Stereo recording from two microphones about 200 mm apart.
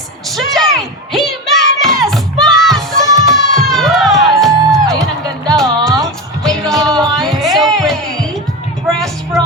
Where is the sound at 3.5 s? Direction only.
Centre (ahead or behind).